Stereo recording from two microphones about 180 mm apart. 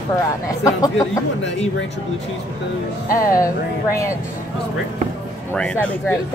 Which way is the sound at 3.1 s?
50° left (ahead or behind).